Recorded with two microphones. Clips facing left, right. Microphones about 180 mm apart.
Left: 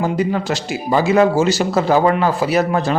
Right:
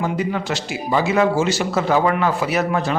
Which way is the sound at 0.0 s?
35° left (ahead or behind).